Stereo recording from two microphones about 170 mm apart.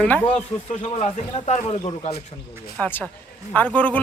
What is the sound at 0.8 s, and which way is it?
Speech, 40° left (ahead or behind).